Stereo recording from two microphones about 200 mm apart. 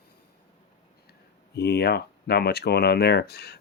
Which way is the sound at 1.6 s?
55° left (ahead or behind).